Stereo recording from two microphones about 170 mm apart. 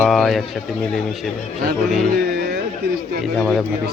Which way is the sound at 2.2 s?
70° right (ahead or behind).